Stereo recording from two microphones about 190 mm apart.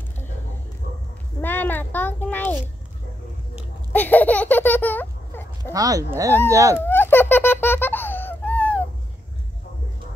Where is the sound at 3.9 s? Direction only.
10° left (ahead or behind).